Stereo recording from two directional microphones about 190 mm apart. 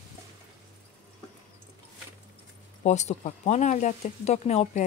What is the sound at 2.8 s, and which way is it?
Speech, 35° left (ahead or behind).